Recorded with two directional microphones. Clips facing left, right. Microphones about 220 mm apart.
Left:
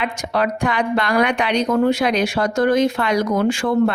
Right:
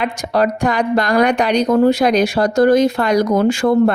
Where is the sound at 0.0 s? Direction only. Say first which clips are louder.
Right 4 dB; 40° right (ahead or behind).